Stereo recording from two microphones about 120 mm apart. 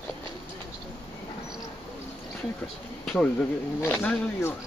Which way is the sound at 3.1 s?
10° left (ahead or behind).